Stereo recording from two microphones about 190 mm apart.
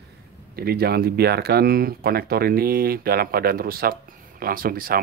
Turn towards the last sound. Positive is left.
turn(degrees=-50)  # may be behind; listen again after turning